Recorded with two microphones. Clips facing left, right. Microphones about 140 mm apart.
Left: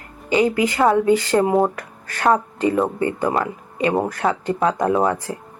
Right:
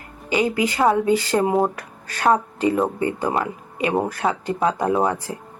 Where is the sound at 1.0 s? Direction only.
20° right (ahead or behind).